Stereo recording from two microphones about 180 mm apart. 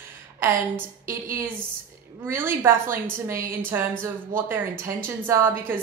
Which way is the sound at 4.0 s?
10° right (ahead or behind).